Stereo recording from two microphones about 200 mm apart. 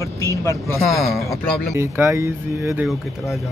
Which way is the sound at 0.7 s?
Centre (ahead or behind).